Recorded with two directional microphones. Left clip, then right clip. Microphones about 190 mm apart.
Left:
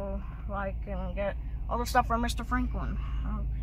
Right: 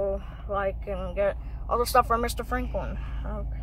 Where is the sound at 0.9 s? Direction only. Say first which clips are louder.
Right 7 dB; 5° right (ahead or behind).